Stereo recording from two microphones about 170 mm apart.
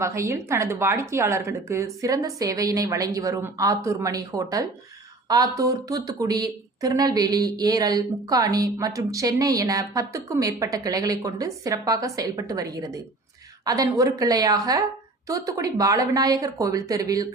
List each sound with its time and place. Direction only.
0.0 s speech: 15° right (ahead or behind)